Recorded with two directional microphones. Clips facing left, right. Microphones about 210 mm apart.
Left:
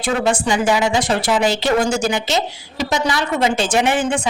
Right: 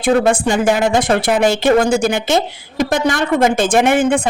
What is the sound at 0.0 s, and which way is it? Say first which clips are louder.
Speech: right 5 dB; 55° right (ahead or behind).